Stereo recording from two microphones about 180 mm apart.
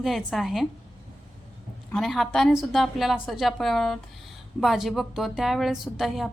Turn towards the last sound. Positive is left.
turn(degrees=0)  # may be behind; listen again after turning